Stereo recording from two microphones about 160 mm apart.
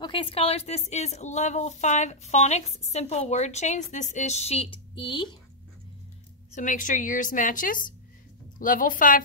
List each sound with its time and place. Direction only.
0.0 s a woman's voice: 35° left (ahead or behind)
6.5 s a woman's voice: 55° left (ahead or behind)